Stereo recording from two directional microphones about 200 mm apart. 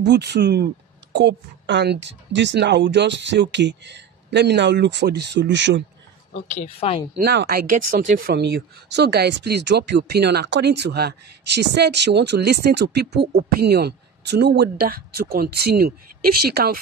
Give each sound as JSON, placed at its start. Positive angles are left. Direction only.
{"t": 0.0, "sound": "speech", "side_deg": -55}
{"t": 6.5, "sound": "a woman's voice", "side_deg": 30}
{"t": 7.2, "sound": "speech", "side_deg": -55}